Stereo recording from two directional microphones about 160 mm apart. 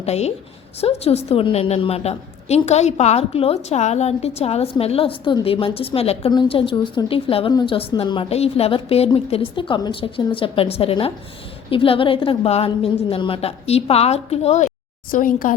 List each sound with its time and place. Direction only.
0.0 s a woman's voice: 40° left (ahead or behind)
15.1 s a woman's voice: 60° left (ahead or behind)